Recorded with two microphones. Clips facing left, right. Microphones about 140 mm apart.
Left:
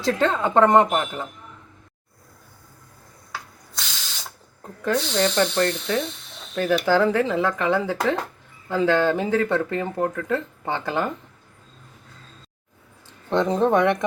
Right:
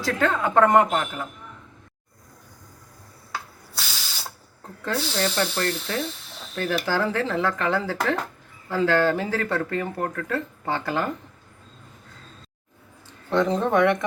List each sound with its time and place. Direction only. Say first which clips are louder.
0.0 s speech: left 2 dB; 25° left (ahead or behind)
3.8 s ratchet: right 1 dB; 10° right (ahead or behind)
4.9 s speech: left 3 dB; 5° right (ahead or behind)
7.0 s speech: left 4 dB; 15° left (ahead or behind)
13.3 s speech: left 2 dB; 20° left (ahead or behind)